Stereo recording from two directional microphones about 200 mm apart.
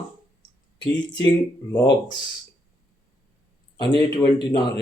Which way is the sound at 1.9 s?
20° left (ahead or behind).